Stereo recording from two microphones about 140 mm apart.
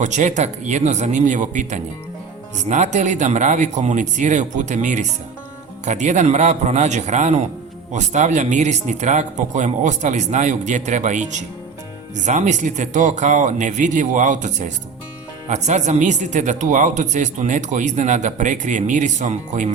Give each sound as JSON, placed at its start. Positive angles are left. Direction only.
{"t": 0.0, "sound": "speech", "side_deg": -60}